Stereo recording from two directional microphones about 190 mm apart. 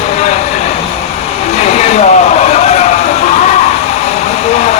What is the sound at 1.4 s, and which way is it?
Vehicle, 35° left (ahead or behind).